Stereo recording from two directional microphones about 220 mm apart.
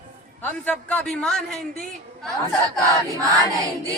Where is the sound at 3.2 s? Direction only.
15° right (ahead or behind).